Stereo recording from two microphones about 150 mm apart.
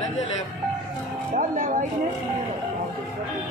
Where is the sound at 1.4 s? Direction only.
60° right (ahead or behind).